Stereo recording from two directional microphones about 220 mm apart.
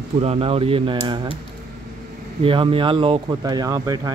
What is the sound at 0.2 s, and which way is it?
Speech, 25° right (ahead or behind).